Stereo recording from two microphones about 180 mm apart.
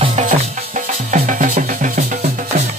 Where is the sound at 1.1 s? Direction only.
45° right (ahead or behind).